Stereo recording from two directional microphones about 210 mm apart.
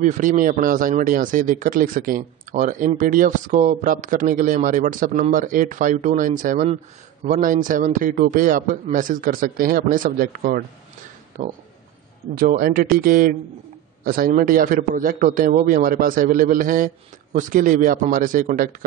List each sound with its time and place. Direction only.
0.0 s a man's voice: 35° right (ahead or behind)